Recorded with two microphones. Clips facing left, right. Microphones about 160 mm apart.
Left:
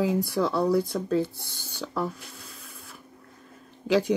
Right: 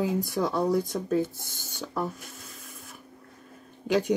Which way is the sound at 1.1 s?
20° right (ahead or behind).